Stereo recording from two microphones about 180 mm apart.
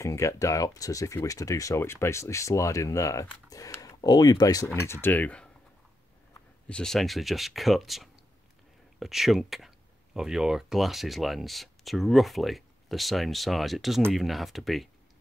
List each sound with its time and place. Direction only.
0.0 s speech: 15° left (ahead or behind)
6.7 s speech: 5° left (ahead or behind)